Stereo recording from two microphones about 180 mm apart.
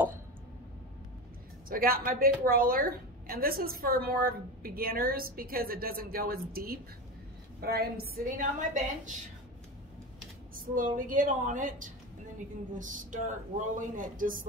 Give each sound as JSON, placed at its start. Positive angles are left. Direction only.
{"t": 1.7, "sound": "a woman's voice", "side_deg": -55}
{"t": 10.5, "sound": "a woman's voice", "side_deg": -50}